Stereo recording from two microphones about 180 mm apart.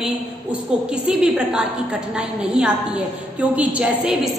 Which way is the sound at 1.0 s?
5° right (ahead or behind).